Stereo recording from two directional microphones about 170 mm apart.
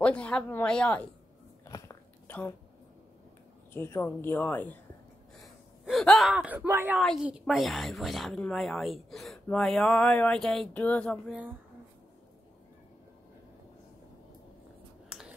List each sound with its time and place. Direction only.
0.0 s speech: 5° left (ahead or behind)
1.6 s biting: 20° left (ahead or behind)
3.7 s speech: 15° left (ahead or behind)
5.9 s a woman's voice: centre (ahead or behind)
6.3 s speech: 10° right (ahead or behind)
7.0 s a woman's voice: centre (ahead or behind)
15.0 s whispering: 5° right (ahead or behind)